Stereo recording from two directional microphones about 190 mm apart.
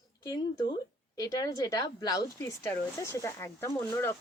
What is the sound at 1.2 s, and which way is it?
Speech, 20° left (ahead or behind).